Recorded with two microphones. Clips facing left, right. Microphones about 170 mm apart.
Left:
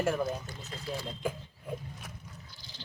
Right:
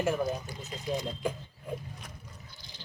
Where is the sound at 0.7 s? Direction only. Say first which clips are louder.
Right 5 dB; 15° right (ahead or behind).